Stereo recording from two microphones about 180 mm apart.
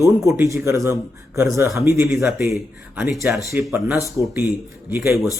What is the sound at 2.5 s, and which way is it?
Speech, centre (ahead or behind).